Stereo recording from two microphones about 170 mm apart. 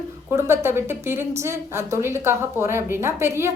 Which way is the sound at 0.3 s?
15° right (ahead or behind).